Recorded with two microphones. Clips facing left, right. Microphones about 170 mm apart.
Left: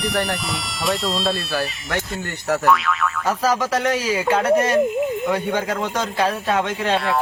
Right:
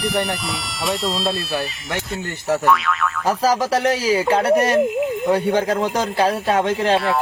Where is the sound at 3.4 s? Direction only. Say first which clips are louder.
Right 2 dB; 35° right (ahead or behind).